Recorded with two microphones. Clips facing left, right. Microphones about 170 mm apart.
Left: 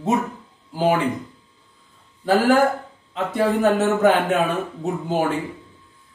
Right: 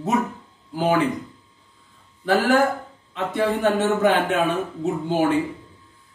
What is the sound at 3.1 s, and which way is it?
Speech, 40° left (ahead or behind).